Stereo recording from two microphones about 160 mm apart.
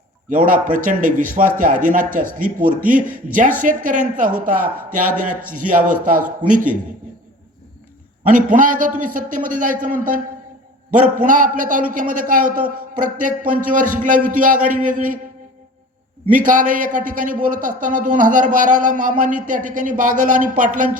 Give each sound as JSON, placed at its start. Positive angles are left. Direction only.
{"t": 0.3, "sound": "a man's voice", "side_deg": -60}
{"t": 8.3, "sound": "a man's voice", "side_deg": -55}
{"t": 16.3, "sound": "a man's voice", "side_deg": -55}